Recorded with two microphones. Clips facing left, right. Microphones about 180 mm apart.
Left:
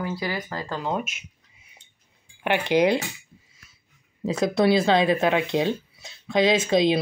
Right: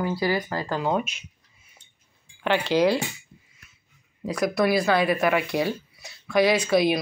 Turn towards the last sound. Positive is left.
turn(degrees=20)  # may be behind; listen again after turning